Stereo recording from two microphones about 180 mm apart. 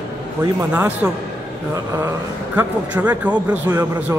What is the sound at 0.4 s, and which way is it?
A man's voice, 15° right (ahead or behind).